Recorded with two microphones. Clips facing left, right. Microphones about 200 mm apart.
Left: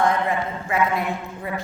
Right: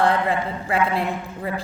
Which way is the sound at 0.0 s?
30° right (ahead or behind).